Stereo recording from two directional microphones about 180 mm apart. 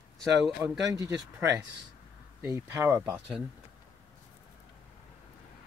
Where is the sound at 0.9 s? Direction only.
15° right (ahead or behind).